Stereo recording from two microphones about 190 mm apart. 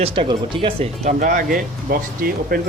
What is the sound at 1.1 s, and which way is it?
Speech, 45° right (ahead or behind).